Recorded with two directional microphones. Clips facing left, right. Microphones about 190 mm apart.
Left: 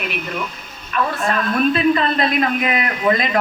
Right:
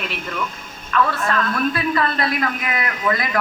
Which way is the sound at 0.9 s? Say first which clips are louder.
Even; 20° left (ahead or behind).